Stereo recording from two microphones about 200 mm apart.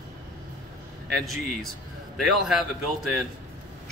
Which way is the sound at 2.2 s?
Centre (ahead or behind).